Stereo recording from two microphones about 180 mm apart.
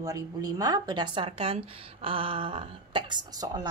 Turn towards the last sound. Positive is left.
turn(degrees=-20)  # may be behind; listen again after turning